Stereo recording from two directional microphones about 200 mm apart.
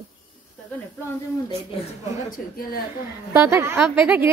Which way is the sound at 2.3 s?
45° left (ahead or behind).